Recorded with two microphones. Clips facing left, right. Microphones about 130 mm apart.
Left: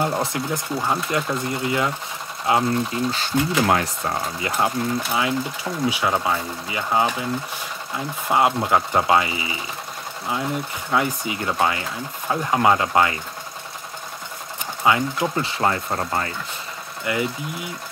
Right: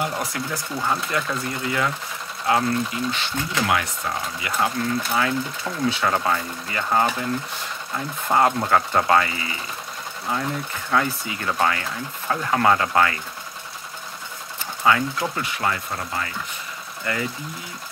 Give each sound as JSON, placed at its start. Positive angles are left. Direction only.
{"t": 0.0, "sound": "speech", "side_deg": 25}
{"t": 3.6, "sound": "speech", "side_deg": 35}
{"t": 8.3, "sound": "speech", "side_deg": 10}
{"t": 14.9, "sound": "speech", "side_deg": 20}
{"t": 17.0, "sound": "speech", "side_deg": 15}